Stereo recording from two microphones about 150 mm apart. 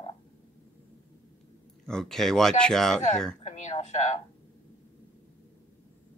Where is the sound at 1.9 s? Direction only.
5° left (ahead or behind).